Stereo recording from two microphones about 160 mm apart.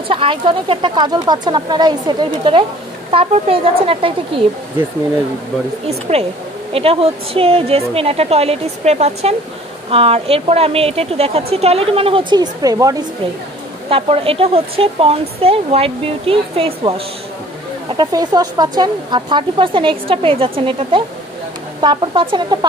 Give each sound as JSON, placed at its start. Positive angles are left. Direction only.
{"t": 0.1, "sound": "speech", "side_deg": -35}
{"t": 5.9, "sound": "speech", "side_deg": -40}
{"t": 13.8, "sound": "speech", "side_deg": -35}
{"t": 17.8, "sound": "speech", "side_deg": -25}